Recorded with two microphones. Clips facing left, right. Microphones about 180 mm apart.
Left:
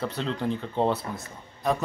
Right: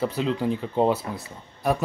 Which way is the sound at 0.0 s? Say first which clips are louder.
Right 4 dB; 5° right (ahead or behind).